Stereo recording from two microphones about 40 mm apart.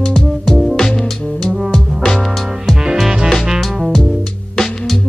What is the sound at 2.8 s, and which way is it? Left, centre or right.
Music, centre.